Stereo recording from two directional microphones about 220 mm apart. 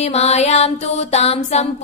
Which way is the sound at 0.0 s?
30° left (ahead or behind).